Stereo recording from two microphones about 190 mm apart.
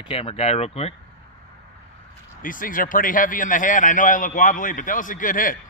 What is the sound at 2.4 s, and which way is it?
A man's voice, 45° left (ahead or behind).